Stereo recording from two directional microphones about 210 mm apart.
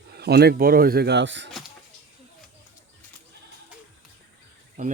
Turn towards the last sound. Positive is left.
turn(degrees=-35)  # may be behind; listen again after turning